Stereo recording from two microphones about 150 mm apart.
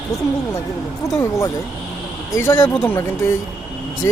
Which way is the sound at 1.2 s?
20° left (ahead or behind).